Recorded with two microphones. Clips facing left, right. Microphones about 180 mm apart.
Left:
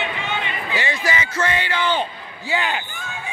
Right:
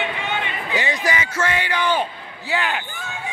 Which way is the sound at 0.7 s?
15° right (ahead or behind).